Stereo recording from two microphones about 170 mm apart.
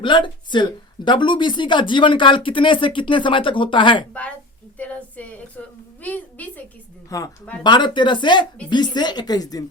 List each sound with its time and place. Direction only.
0.0 s speech: 30° left (ahead or behind)
4.1 s a woman's voice: 10° left (ahead or behind)
4.8 s a sound: 10° left (ahead or behind)
7.1 s speech: 20° left (ahead or behind)